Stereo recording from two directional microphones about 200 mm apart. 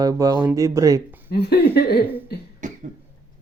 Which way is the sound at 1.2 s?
55° left (ahead or behind).